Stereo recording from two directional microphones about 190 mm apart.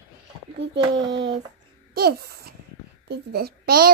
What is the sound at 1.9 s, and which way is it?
A child's voice, 55° right (ahead or behind).